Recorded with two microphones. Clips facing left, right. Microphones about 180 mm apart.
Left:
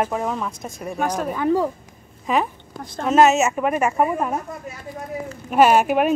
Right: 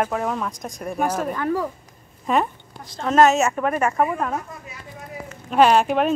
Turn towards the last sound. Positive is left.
turn(degrees=10)  # may be behind; listen again after turning